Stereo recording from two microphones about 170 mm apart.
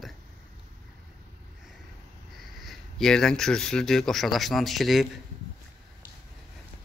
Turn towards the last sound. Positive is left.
turn(degrees=0)  # may be behind; listen again after turning